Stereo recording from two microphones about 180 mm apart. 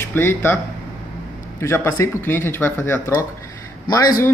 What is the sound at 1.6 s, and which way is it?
Speech, 10° left (ahead or behind).